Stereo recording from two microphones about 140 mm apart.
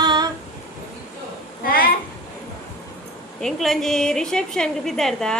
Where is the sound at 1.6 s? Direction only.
90° left.